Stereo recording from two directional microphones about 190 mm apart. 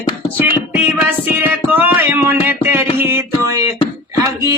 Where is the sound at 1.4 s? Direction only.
10° right (ahead or behind).